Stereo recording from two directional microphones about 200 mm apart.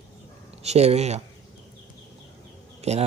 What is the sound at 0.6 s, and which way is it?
Speech, 30° right (ahead or behind).